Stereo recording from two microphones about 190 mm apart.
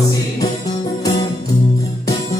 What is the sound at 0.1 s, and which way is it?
Music, 20° left (ahead or behind).